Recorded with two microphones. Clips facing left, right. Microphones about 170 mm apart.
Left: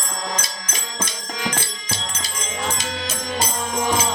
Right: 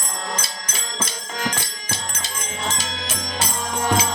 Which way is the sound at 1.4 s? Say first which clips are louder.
Even; 45° right (ahead or behind).